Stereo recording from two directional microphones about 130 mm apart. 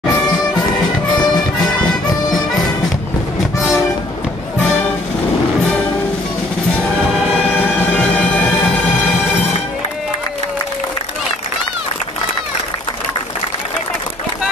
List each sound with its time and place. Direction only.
1.1 s music: 35° left (ahead or behind)
7.0 s music: 5° right (ahead or behind)
7.9 s music: 10° left (ahead or behind)